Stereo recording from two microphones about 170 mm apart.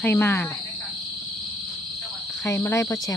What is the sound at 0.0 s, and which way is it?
Cricket, 10° left (ahead or behind).